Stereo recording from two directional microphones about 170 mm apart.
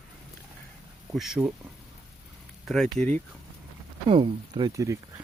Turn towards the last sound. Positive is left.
turn(degrees=-20)  # may be behind; listen again after turning